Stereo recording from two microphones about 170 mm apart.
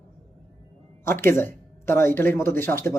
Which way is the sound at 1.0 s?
15° left (ahead or behind).